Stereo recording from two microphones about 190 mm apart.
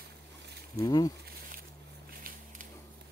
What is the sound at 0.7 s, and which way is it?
Speech, 20° left (ahead or behind).